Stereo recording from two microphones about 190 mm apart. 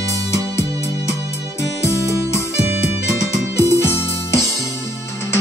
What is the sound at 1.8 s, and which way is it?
Music, 15° left (ahead or behind).